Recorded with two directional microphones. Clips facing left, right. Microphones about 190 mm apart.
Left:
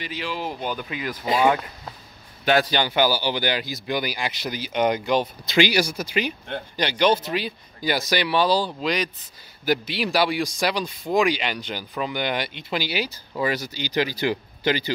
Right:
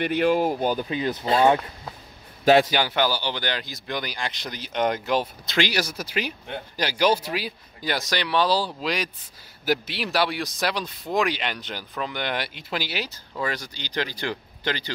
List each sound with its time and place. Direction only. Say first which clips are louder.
0.0 s speech: right 9 dB; 55° right (ahead or behind); by 1.2 s 30° right (ahead or behind)
1.2 s speech: even; 10° left (ahead or behind)
2.4 s speech: right 4 dB; 30° right (ahead or behind)
2.9 s speech: left 3 dB; 5° left (ahead or behind)